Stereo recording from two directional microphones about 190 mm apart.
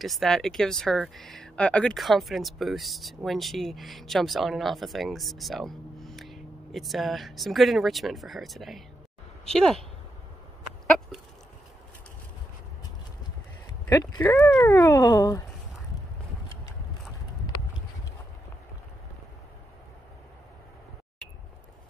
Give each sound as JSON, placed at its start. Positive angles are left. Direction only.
{"t": 0.0, "sound": "speech", "side_deg": 0}
{"t": 13.8, "sound": "speech", "side_deg": 20}